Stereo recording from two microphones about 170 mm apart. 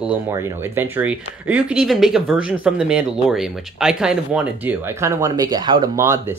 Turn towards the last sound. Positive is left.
turn(degrees=-15)  # may be behind; listen again after turning